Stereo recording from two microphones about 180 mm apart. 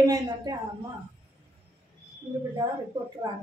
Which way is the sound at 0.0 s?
20° right (ahead or behind).